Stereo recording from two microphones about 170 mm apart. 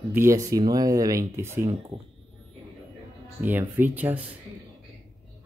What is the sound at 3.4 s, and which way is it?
Speech, 10° right (ahead or behind).